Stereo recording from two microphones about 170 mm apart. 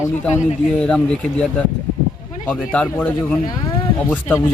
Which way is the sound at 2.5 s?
5° left (ahead or behind).